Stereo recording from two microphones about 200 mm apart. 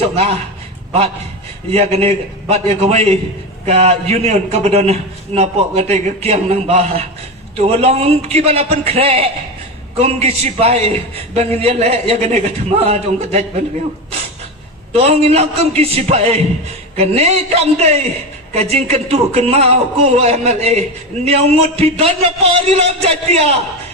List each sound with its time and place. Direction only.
0.0 s a man's voice: 30° right (ahead or behind)
1.7 s a man's voice: 30° right (ahead or behind)
14.9 s a man's voice: 30° right (ahead or behind)